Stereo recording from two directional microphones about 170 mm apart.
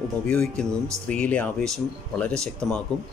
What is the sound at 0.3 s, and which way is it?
Speech, 5° left (ahead or behind).